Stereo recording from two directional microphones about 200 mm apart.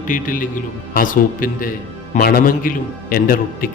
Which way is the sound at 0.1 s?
45° left (ahead or behind).